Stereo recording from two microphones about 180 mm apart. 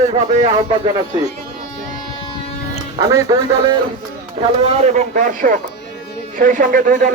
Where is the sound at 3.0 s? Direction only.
20° right (ahead or behind).